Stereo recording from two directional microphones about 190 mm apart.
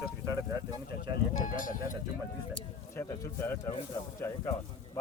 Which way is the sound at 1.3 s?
45° left (ahead or behind).